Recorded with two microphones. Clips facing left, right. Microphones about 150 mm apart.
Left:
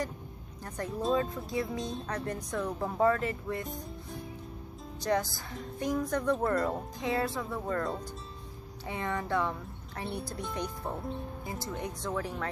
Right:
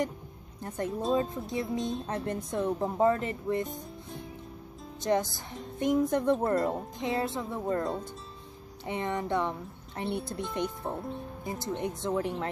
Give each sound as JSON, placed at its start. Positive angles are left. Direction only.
{"t": 0.6, "sound": "speech", "side_deg": -20}
{"t": 3.6, "sound": "music", "side_deg": 0}
{"t": 5.0, "sound": "speech", "side_deg": -20}